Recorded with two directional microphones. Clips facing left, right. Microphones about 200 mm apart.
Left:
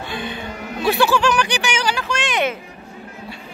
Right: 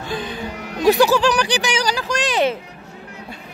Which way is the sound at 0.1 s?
40° right (ahead or behind).